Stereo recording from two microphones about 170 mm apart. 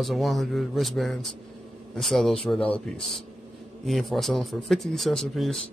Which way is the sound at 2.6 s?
35° left (ahead or behind).